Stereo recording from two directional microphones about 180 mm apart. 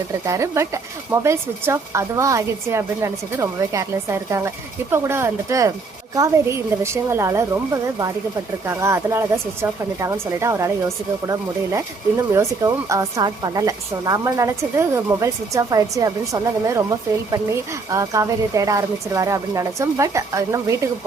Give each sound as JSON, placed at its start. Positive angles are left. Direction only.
{"t": 0.3, "sound": "speech", "side_deg": -15}
{"t": 17.9, "sound": "speech", "side_deg": -15}